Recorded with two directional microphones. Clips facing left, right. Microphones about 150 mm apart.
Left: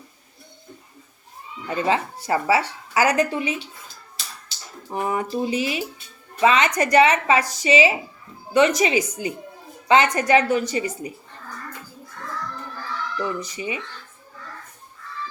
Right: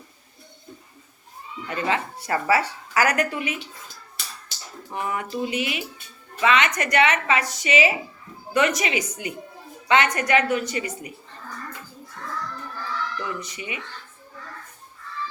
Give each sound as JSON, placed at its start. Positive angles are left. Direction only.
{"t": 1.6, "sound": "speech", "side_deg": 30}
{"t": 4.9, "sound": "a woman's voice", "side_deg": 30}
{"t": 13.1, "sound": "a woman's voice", "side_deg": 30}